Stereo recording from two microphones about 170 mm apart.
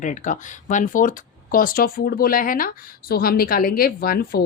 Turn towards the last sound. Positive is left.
turn(degrees=65)  # may be behind; listen again after turning